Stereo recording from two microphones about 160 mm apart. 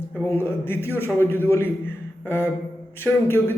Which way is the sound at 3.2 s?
10° left (ahead or behind).